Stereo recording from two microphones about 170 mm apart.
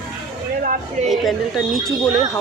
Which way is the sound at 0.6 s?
55° right (ahead or behind).